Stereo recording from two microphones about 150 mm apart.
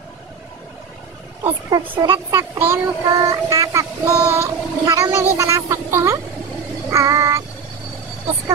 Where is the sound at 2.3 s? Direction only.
15° right (ahead or behind).